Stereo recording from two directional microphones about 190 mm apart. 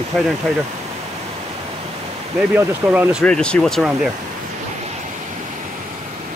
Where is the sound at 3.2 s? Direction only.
5° left (ahead or behind).